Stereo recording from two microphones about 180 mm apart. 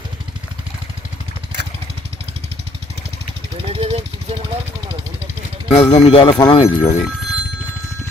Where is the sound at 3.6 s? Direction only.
30° right (ahead or behind).